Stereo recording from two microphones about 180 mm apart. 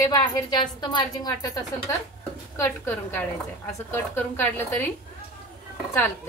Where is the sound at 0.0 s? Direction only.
20° left (ahead or behind).